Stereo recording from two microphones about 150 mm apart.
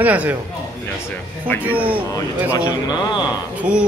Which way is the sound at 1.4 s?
10° left (ahead or behind).